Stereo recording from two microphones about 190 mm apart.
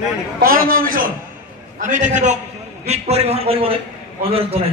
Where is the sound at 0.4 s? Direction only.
50° right (ahead or behind); by 3.7 s 30° right (ahead or behind).